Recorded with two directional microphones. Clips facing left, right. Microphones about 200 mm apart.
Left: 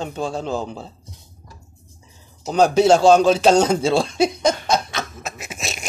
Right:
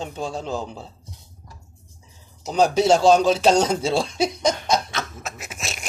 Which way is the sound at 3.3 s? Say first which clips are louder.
Left 3 dB; 5° left (ahead or behind).